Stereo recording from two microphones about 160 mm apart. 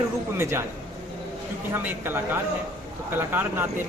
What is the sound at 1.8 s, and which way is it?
Speech, 10° right (ahead or behind).